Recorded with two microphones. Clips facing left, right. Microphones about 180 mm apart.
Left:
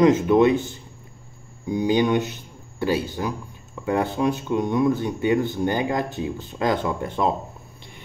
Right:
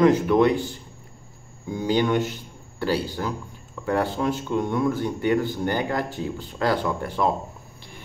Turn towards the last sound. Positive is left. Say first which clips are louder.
# left 1 dB
turn(degrees=20)  # may be behind; listen again after turning